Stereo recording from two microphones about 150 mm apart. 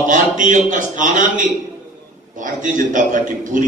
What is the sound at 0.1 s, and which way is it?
A man's voice, 60° right (ahead or behind).